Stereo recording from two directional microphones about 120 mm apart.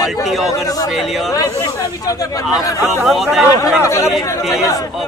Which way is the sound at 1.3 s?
30° left (ahead or behind).